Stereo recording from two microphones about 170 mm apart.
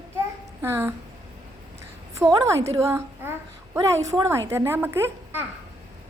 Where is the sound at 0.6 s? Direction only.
15° right (ahead or behind).